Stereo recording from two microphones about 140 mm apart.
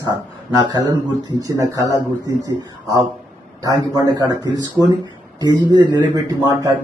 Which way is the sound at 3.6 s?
25° right (ahead or behind).